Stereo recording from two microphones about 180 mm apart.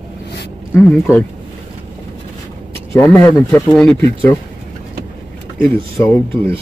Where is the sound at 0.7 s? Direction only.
10° left (ahead or behind).